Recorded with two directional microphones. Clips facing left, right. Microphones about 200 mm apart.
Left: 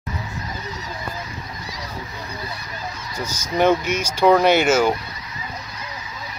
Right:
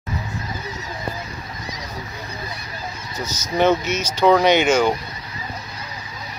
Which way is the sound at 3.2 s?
10° left (ahead or behind).